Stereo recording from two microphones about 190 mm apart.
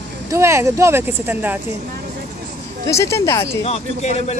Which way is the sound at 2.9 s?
15° left (ahead or behind).